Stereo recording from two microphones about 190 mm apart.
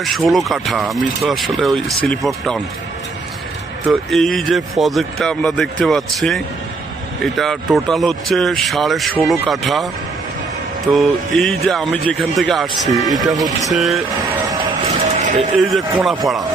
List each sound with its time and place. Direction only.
0.0 s speech: centre (ahead or behind)
3.8 s speech: centre (ahead or behind)
10.9 s speech: centre (ahead or behind)
14.9 s vehicle: 40° right (ahead or behind)
15.7 s speech: centre (ahead or behind)